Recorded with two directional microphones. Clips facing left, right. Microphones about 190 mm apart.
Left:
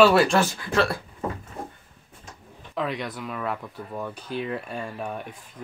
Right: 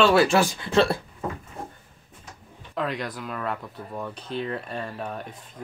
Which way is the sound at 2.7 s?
Centre (ahead or behind).